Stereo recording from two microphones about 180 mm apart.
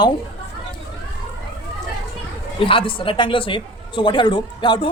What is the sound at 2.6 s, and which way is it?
Speech, 30° left (ahead or behind).